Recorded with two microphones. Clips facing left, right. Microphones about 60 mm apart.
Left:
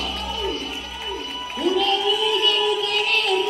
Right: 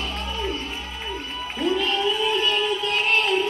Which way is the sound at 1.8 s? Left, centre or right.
Centre.